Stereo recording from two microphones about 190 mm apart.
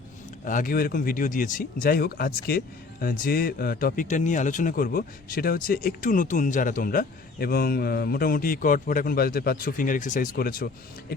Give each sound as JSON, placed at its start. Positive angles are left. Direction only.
{"t": 0.4, "sound": "speech", "side_deg": 45}